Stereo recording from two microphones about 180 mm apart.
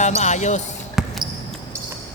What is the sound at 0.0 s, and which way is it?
Speech, 40° left (ahead or behind).